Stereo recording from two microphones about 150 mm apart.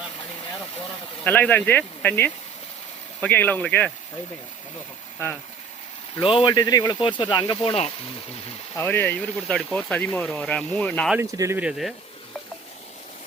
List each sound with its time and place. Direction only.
1.2 s speech: 10° left (ahead or behind)
6.1 s speech: 35° left (ahead or behind)
8.7 s speech: 15° left (ahead or behind)
11.2 s speech: 20° right (ahead or behind)
11.6 s speech: centre (ahead or behind)